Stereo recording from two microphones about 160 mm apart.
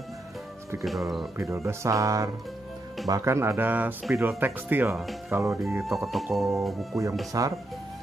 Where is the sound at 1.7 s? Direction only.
20° right (ahead or behind).